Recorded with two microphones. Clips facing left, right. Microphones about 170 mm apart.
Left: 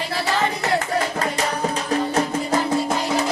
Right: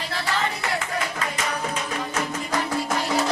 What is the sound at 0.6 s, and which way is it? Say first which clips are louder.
Music: left 6 dB; 40° left (ahead or behind).